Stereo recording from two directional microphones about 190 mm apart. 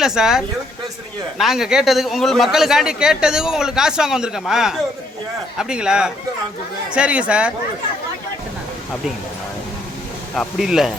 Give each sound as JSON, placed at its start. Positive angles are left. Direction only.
{"t": 0.0, "sound": "a man's voice", "side_deg": -5}
{"t": 10.3, "sound": "a man's voice", "side_deg": 0}